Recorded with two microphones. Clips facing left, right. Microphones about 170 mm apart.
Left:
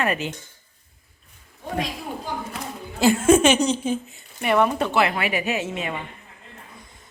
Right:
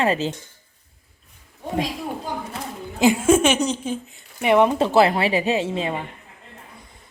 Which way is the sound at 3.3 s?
Centre (ahead or behind).